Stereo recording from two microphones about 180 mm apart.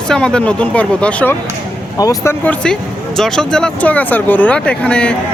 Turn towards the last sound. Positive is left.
turn(degrees=5)  # may be behind; listen again after turning